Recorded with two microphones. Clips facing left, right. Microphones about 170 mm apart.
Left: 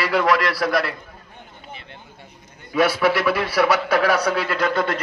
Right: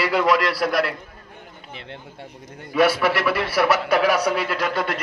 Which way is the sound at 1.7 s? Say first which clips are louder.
Right 6 dB; 80° right.